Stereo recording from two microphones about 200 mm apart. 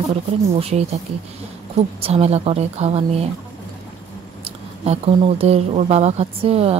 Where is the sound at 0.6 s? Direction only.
30° right (ahead or behind).